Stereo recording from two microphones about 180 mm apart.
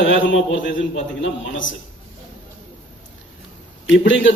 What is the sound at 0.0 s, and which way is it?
A man's voice, 90° left.